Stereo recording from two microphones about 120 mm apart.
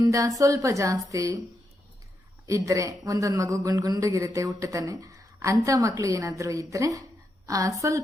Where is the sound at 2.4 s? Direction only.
25° right (ahead or behind).